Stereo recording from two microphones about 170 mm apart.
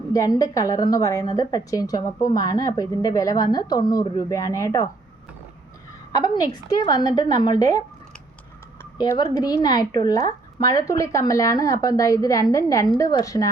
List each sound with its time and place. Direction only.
0.1 s speech: 20° left (ahead or behind)
6.1 s speech: 25° left (ahead or behind)